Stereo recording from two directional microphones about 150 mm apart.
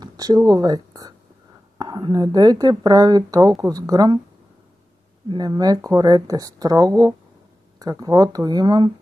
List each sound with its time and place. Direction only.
0.0 s speech: 25° right (ahead or behind)
5.3 s speech: 25° right (ahead or behind)